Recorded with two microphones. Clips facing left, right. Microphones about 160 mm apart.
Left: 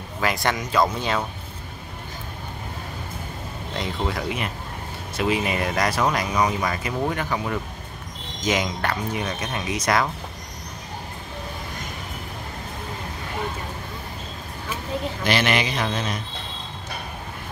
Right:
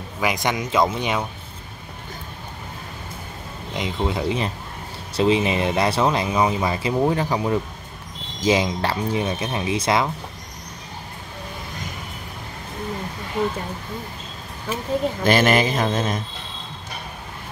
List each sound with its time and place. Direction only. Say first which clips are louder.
0.2 s speech: right 1 dB; 15° right (ahead or behind)
3.7 s speech: right 3 dB; 20° right (ahead or behind)
15.2 s speech: right 5 dB; 45° right (ahead or behind)